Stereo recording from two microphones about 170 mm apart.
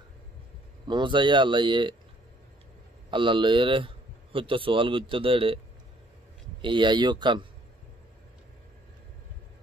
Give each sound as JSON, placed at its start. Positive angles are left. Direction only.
{"t": 0.8, "sound": "speech", "side_deg": -25}
{"t": 3.1, "sound": "speech", "side_deg": -30}
{"t": 6.6, "sound": "speech", "side_deg": -30}